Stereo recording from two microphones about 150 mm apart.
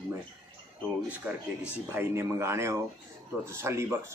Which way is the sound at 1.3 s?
10° right (ahead or behind).